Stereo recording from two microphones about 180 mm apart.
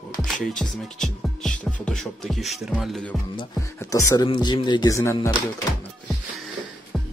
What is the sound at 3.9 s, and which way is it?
Speech, 20° left (ahead or behind).